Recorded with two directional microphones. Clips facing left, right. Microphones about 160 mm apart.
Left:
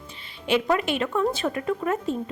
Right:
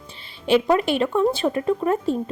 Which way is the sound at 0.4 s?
30° right (ahead or behind).